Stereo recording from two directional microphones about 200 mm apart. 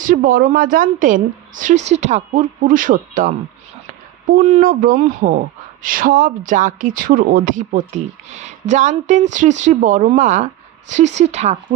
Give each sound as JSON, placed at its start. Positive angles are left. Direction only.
{"t": 0.0, "sound": "a woman's voice", "side_deg": -45}